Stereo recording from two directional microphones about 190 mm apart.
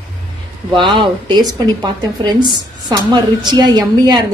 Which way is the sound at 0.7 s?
25° right (ahead or behind).